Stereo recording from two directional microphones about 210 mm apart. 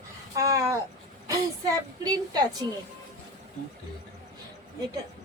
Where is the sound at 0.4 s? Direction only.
15° right (ahead or behind).